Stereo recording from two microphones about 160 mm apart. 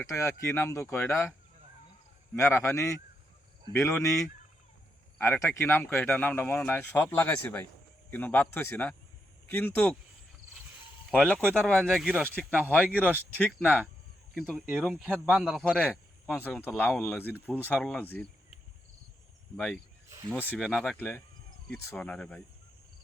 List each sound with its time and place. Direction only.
0.1 s speech: 20° left (ahead or behind)
2.3 s speech: 15° left (ahead or behind)
11.1 s speech: 5° left (ahead or behind)
13.1 s speech: 10° left (ahead or behind)
19.5 s speech: 5° left (ahead or behind)
21.9 s speech: 5° left (ahead or behind)